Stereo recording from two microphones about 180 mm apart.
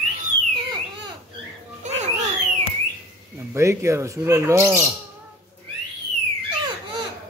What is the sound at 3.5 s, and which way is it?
Speech, 15° right (ahead or behind).